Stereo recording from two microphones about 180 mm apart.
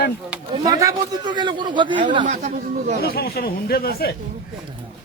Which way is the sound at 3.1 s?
55° left (ahead or behind).